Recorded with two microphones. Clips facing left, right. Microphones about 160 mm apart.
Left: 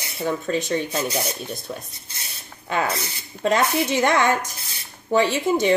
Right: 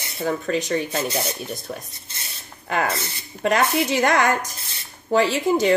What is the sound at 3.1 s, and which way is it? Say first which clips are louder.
A woman's voice: even; 25° left (ahead or behind).